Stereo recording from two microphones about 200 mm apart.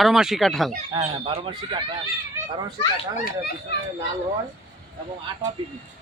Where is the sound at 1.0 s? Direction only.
25° right (ahead or behind).